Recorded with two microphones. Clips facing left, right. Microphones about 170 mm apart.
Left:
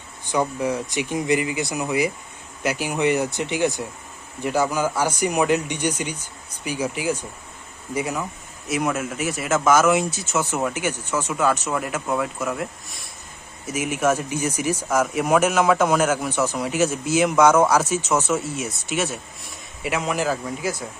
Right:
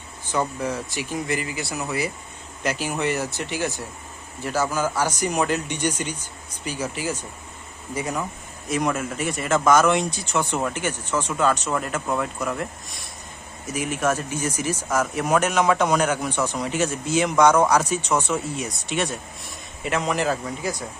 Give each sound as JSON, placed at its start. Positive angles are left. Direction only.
{"t": 0.3, "sound": "speech", "side_deg": 10}